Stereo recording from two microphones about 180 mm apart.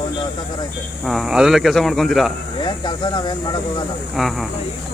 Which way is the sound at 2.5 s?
25° left (ahead or behind).